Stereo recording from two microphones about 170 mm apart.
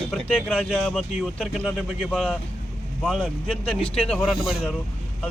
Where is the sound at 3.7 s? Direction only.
35° left (ahead or behind).